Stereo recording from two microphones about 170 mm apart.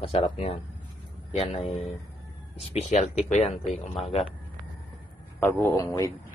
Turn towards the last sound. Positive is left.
turn(degrees=15)  # may be behind; listen again after turning